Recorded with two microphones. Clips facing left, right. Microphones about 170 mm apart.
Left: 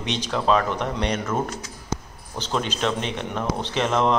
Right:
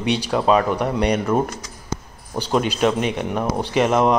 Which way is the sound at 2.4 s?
10° right (ahead or behind).